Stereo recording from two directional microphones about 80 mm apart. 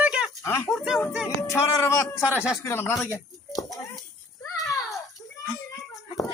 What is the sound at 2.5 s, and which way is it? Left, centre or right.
Speech, left.